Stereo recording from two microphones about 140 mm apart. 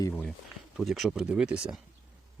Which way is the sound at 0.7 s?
Centre (ahead or behind).